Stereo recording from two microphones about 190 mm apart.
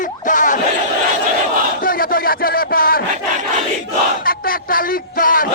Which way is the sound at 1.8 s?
50° left (ahead or behind).